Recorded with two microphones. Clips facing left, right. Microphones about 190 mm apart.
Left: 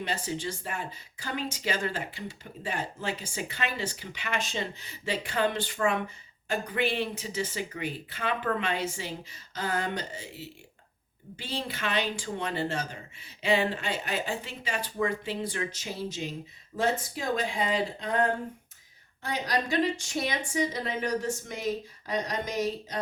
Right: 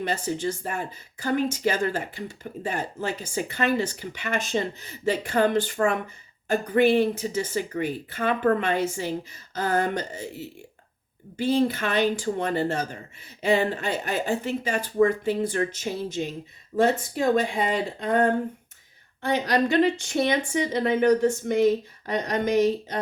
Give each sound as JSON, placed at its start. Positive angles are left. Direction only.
{"t": 0.0, "sound": "speech", "side_deg": -45}
{"t": 19.2, "sound": "a woman's voice", "side_deg": -60}